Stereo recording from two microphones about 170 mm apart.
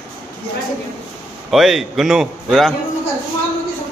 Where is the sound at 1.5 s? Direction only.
Centre (ahead or behind).